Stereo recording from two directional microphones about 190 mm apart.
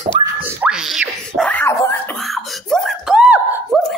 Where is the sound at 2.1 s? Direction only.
Centre (ahead or behind).